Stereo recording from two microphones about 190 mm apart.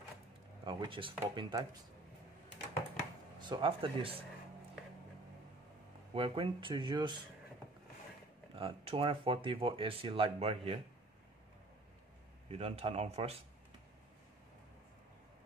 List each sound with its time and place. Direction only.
0.7 s speech: 25° right (ahead or behind)
3.3 s speech: 25° right (ahead or behind)
6.1 s speech: 30° right (ahead or behind)
8.5 s speech: 30° right (ahead or behind)
12.4 s speech: 35° right (ahead or behind)